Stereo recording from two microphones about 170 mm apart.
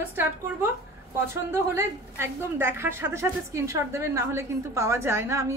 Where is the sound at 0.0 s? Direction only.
10° right (ahead or behind).